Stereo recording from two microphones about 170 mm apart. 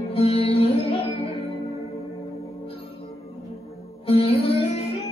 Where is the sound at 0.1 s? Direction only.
35° left (ahead or behind).